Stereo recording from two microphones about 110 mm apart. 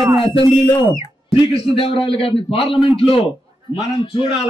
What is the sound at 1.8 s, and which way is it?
A man's voice, 55° left (ahead or behind).